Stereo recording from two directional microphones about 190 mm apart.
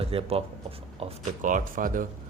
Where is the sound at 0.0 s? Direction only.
30° right (ahead or behind).